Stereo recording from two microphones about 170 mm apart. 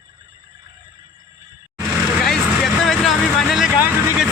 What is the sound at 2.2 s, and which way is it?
Vehicle, centre (ahead or behind).